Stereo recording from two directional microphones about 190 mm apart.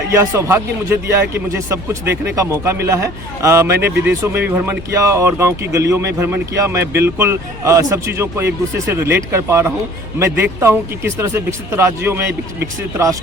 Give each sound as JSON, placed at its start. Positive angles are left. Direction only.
{"t": 0.2, "sound": "speech", "side_deg": -15}
{"t": 3.8, "sound": "speech", "side_deg": -55}
{"t": 4.2, "sound": "speech", "side_deg": -10}